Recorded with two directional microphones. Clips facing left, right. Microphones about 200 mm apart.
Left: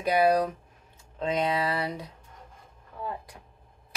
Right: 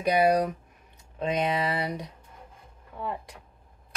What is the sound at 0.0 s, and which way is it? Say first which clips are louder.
Speech: even; 15° right (ahead or behind).